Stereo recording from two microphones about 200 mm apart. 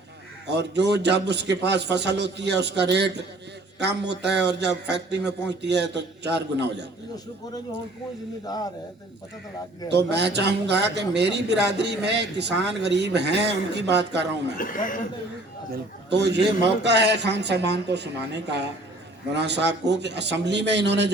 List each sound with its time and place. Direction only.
0.4 s a man's voice: 60° right (ahead or behind)
8.4 s speech: 20° left (ahead or behind)
9.9 s a man's voice: 55° right (ahead or behind)
14.6 s speech: 45° left (ahead or behind)
15.7 s a man's voice: 60° right (ahead or behind)
19.3 s a man's voice: 60° right (ahead or behind)